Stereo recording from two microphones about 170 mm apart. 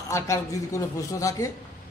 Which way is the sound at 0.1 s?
15° left (ahead or behind).